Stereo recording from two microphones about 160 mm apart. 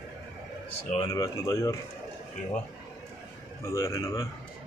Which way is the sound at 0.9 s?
20° left (ahead or behind).